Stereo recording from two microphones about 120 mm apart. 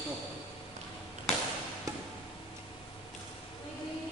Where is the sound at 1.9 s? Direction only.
30° right (ahead or behind).